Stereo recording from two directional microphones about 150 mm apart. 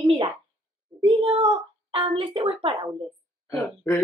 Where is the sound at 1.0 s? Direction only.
35° right (ahead or behind).